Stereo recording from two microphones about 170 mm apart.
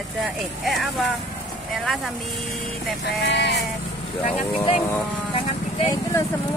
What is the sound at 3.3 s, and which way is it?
Vehicle, 90° left.